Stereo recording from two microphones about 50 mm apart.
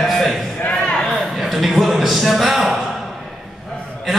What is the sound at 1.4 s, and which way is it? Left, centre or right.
Music, centre.